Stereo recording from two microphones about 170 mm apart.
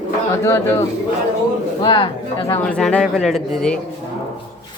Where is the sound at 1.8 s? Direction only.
25° left (ahead or behind).